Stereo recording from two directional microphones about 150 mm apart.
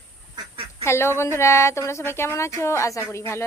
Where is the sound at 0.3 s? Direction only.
35° right (ahead or behind).